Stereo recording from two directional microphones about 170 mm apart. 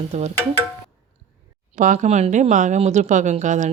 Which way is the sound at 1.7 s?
45° right (ahead or behind).